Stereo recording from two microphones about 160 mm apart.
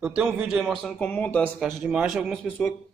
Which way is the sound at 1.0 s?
10° left (ahead or behind).